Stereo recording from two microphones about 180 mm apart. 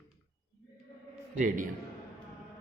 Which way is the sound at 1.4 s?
50° right (ahead or behind).